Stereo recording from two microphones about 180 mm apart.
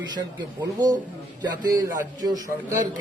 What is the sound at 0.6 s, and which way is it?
A man's voice, 20° right (ahead or behind).